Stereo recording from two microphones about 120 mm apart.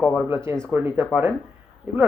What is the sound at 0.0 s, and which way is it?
Speech, 5° left (ahead or behind).